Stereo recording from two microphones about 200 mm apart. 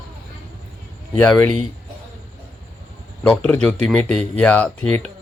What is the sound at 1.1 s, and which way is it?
Speech, 10° left (ahead or behind).